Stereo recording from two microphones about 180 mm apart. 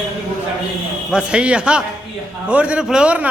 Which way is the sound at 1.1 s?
5° right (ahead or behind).